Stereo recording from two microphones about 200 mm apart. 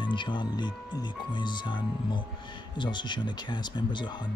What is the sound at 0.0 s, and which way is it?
Speech, 25° left (ahead or behind).